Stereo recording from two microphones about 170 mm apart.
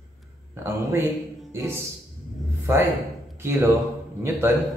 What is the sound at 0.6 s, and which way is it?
Speech, 15° right (ahead or behind).